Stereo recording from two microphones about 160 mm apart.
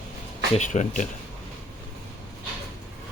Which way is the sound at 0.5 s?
50° left (ahead or behind).